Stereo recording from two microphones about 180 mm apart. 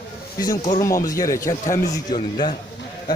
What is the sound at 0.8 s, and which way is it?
Speech, 20° left (ahead or behind).